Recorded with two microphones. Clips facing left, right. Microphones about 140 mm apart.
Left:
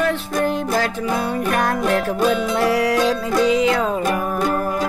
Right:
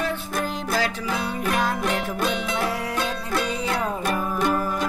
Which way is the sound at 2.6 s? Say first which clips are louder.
Left 9 dB; 80° left.